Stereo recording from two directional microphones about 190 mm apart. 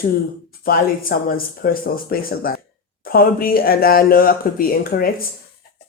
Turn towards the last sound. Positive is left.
turn(degrees=50)  # may be behind; listen again after turning